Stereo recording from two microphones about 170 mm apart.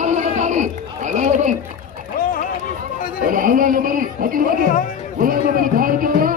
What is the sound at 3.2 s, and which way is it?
A man's voice, 55° right (ahead or behind).